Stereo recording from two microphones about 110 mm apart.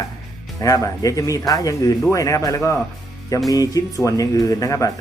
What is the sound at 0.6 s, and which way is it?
A man's voice, 30° left (ahead or behind).